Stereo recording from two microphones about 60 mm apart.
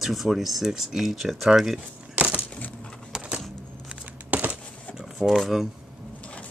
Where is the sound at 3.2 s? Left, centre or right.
Centre.